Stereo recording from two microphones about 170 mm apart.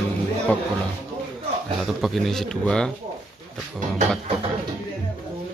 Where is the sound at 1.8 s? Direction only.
Centre (ahead or behind).